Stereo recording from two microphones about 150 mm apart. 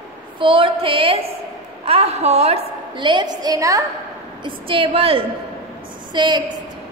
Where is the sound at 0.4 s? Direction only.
35° right (ahead or behind).